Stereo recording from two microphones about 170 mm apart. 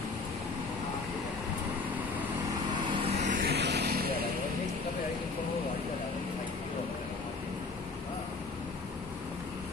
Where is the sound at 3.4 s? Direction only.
75° right (ahead or behind).